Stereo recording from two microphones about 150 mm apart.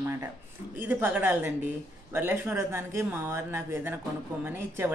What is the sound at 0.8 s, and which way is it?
Speech, 15° right (ahead or behind).